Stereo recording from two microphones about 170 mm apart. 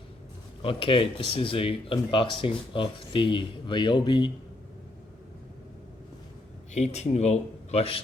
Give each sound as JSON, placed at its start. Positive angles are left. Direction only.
{"t": 0.6, "sound": "speech", "side_deg": 30}
{"t": 6.7, "sound": "speech", "side_deg": 40}